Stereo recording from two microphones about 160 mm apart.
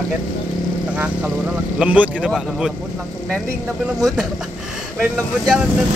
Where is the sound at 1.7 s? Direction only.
10° right (ahead or behind).